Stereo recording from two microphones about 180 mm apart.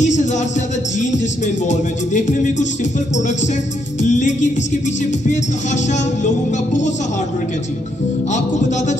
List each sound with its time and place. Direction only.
0.0 s speech: 40° left (ahead or behind)
8.3 s speech: 40° left (ahead or behind)